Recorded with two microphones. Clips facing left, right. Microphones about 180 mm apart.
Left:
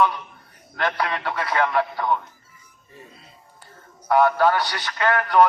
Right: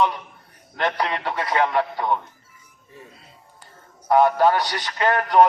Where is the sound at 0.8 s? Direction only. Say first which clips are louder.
Right 1 dB; 20° right (ahead or behind).